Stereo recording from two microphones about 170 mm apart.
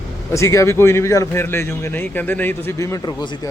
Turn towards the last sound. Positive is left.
turn(degrees=20)  # may be behind; listen again after turning